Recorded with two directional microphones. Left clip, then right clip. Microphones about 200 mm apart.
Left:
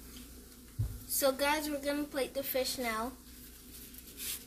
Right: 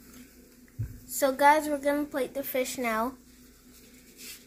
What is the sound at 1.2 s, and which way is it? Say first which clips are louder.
A woman's voice: right 9 dB; 15° right (ahead or behind).